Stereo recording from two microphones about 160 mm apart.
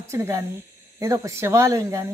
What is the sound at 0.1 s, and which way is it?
Speech, 15° right (ahead or behind).